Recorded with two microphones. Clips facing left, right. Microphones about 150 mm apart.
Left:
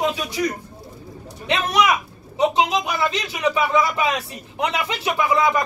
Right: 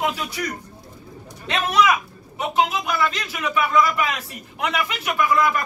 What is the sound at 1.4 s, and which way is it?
Speech, 20° left (ahead or behind).